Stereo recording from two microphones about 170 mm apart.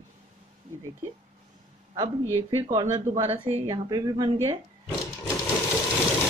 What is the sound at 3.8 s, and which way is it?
Speech, 20° right (ahead or behind).